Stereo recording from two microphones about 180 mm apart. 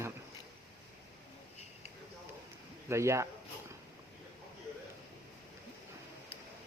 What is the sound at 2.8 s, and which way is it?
Speech, 15° right (ahead or behind).